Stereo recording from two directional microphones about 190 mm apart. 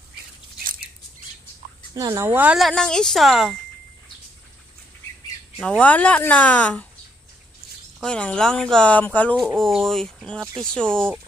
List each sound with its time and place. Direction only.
2.0 s speech: 15° right (ahead or behind); by 3.5 s centre (ahead or behind)
5.6 s a woman's voice: 5° left (ahead or behind)
8.0 s speech: 5° left (ahead or behind)